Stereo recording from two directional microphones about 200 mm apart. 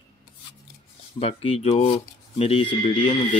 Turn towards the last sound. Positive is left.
turn(degrees=30)  # may be behind; listen again after turning